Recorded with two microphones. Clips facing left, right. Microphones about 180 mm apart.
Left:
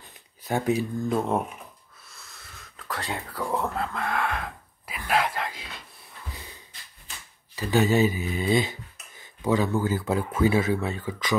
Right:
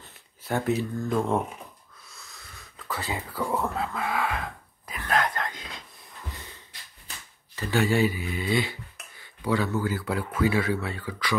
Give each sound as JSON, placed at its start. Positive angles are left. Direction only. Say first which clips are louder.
{"t": 0.1, "sound": "speech", "louder": "left 1 dB", "side_deg": 15}
{"t": 2.0, "sound": "a sound", "louder": "even", "side_deg": 0}
{"t": 4.9, "sound": "whispering", "louder": "left 1 dB", "side_deg": 10}
{"t": 7.5, "sound": "speech", "louder": "left 2 dB", "side_deg": 20}